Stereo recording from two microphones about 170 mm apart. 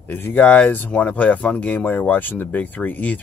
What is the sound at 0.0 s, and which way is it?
Speech, 10° left (ahead or behind).